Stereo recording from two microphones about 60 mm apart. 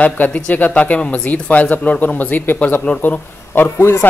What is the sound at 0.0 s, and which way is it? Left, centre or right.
A man's voice, left.